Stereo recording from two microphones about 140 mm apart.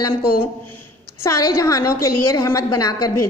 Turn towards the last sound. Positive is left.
turn(degrees=25)  # may be behind; listen again after turning